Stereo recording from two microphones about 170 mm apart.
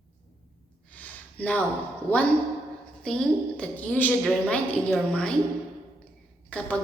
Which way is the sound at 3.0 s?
5° left (ahead or behind).